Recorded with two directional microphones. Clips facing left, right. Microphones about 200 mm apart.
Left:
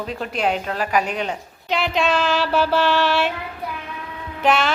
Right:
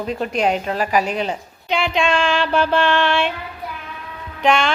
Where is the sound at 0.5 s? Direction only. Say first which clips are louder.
Right 3 dB; 5° right (ahead or behind).